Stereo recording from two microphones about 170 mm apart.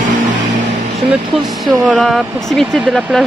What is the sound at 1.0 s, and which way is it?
Speech, centre (ahead or behind).